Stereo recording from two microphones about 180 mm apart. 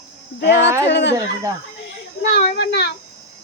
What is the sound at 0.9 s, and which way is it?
Speech, 75° left (ahead or behind).